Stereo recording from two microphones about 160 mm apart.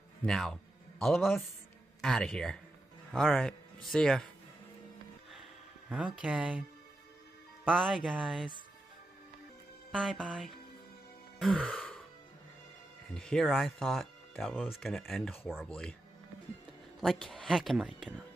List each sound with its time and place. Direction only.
0.2 s speech: centre (ahead or behind)
5.9 s speech: 5° right (ahead or behind)
7.7 s speech: centre (ahead or behind)
9.8 s speech: centre (ahead or behind)
11.3 s music: 5° left (ahead or behind)
13.1 s speech: 5° left (ahead or behind)
17.0 s speech: centre (ahead or behind)